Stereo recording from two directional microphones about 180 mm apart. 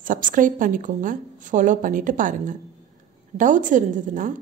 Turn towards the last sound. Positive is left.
turn(degrees=-45)  # may be behind; listen again after turning